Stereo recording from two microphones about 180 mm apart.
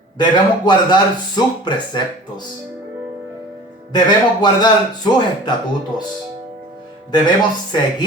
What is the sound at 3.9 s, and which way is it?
A man's voice, 25° left (ahead or behind).